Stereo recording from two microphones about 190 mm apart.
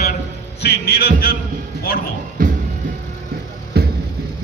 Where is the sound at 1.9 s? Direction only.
55° left (ahead or behind).